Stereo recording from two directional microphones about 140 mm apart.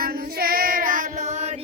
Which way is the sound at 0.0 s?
90° right.